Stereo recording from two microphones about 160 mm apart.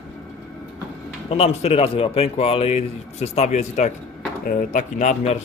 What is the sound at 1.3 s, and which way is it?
Speech, 40° left (ahead or behind).